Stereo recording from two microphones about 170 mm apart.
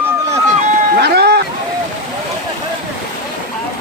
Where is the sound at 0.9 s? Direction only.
70° right (ahead or behind).